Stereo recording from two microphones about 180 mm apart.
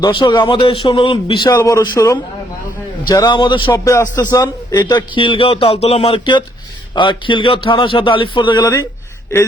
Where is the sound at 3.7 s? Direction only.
15° left (ahead or behind).